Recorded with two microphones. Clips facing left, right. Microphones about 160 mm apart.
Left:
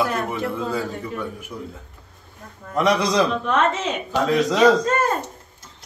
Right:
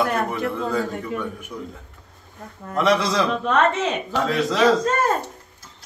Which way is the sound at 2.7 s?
15° left (ahead or behind).